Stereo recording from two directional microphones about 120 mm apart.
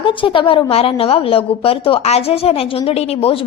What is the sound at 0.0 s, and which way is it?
A woman's voice, 45° left (ahead or behind).